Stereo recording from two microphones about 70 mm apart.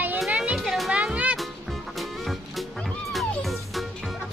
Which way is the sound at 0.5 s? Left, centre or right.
Centre.